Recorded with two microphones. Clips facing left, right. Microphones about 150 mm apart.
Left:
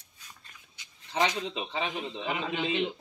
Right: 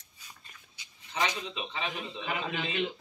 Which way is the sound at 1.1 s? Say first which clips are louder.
Left 4 dB; 40° left (ahead or behind).